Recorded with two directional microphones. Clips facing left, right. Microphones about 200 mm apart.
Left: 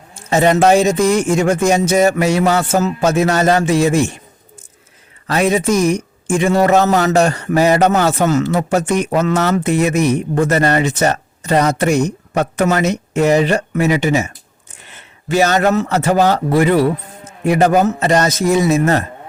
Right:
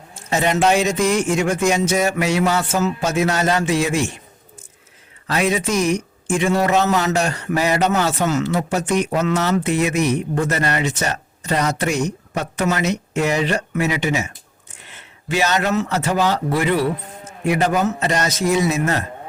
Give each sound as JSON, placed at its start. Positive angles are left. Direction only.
{"t": 0.3, "sound": "speech", "side_deg": 40}
{"t": 5.3, "sound": "speech", "side_deg": 45}
{"t": 15.3, "sound": "speech", "side_deg": 45}